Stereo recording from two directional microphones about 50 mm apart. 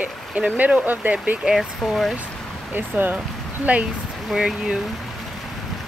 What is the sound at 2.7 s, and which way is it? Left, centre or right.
Speech, right.